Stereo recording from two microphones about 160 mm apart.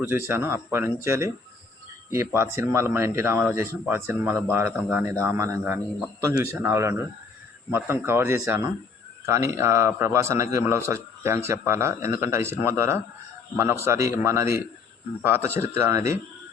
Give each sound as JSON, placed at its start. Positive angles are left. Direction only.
{"t": 0.0, "sound": "speech", "side_deg": -15}